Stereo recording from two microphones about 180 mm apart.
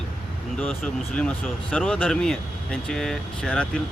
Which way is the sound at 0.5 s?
Centre (ahead or behind).